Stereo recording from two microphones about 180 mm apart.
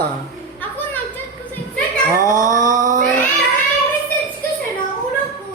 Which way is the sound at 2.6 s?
45° right (ahead or behind).